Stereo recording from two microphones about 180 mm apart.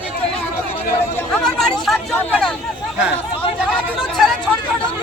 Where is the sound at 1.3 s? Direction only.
5° left (ahead or behind).